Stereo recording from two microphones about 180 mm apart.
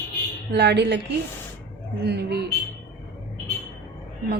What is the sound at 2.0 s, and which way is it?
Speech, 65° right (ahead or behind).